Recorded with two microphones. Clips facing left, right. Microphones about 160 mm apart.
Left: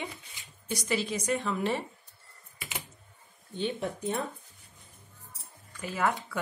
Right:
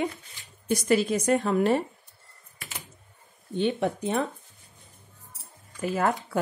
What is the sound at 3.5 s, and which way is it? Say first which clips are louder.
Speech: right 7 dB; 70° right (ahead or behind).